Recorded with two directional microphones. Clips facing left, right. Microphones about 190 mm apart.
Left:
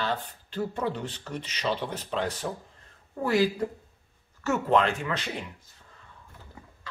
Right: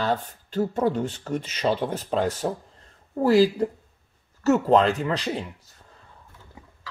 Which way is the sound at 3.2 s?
35° right (ahead or behind).